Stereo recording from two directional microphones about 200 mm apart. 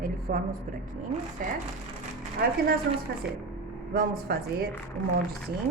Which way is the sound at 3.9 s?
45° right (ahead or behind).